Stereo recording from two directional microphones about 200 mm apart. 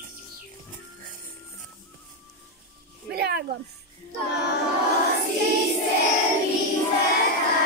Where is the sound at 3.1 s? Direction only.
55° right (ahead or behind).